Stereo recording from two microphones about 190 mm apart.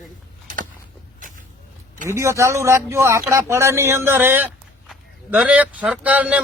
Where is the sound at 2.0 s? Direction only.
15° right (ahead or behind).